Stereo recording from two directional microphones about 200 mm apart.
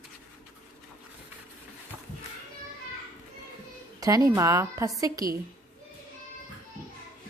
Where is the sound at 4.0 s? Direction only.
20° right (ahead or behind).